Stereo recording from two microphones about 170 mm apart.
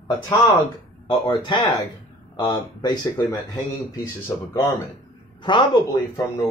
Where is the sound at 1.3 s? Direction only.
30° left (ahead or behind).